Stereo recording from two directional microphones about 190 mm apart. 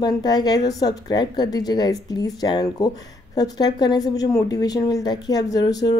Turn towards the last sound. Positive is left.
turn(degrees=20)  # may be behind; listen again after turning